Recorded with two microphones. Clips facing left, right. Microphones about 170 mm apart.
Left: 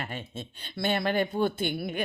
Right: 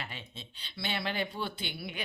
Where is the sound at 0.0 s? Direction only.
50° left (ahead or behind).